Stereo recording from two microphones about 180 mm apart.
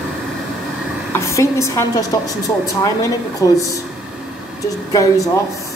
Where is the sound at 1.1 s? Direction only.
15° left (ahead or behind).